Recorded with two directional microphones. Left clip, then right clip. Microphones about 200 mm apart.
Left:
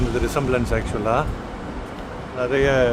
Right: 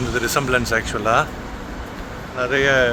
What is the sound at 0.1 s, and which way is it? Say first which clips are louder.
Speech: right 5 dB; 5° left (ahead or behind).